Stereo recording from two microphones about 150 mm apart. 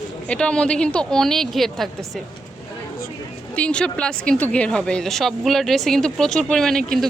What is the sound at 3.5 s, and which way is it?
A woman's voice, 5° left (ahead or behind).